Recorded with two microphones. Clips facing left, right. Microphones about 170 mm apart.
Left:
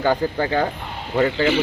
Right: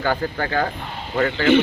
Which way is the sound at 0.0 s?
20° left (ahead or behind).